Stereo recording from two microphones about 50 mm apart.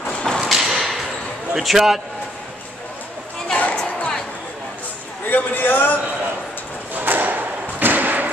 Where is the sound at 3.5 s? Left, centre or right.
Left.